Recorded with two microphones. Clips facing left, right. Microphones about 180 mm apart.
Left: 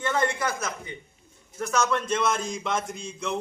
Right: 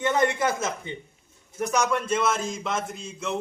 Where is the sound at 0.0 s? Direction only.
20° right (ahead or behind).